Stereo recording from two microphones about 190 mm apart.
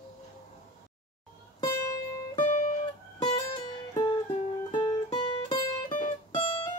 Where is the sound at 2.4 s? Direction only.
40° left (ahead or behind).